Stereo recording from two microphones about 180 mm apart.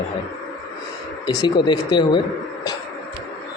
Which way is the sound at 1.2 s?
25° left (ahead or behind).